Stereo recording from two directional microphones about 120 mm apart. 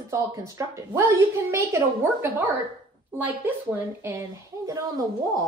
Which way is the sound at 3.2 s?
15° right (ahead or behind).